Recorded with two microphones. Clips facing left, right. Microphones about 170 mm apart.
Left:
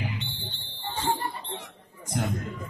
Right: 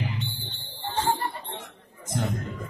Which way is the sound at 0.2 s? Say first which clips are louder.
Right 3 dB; 40° right (ahead or behind).